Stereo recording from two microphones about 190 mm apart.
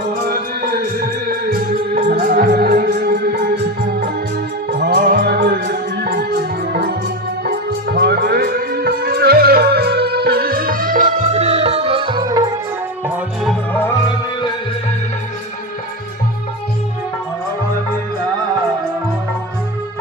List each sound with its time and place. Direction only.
0.3 s music: 55° right (ahead or behind)
4.8 s music: 55° right (ahead or behind); by 12.5 s 25° right (ahead or behind)
13.1 s music: centre (ahead or behind)